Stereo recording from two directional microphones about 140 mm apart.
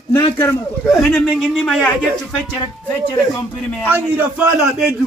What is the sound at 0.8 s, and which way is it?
A man's voice, centre (ahead or behind).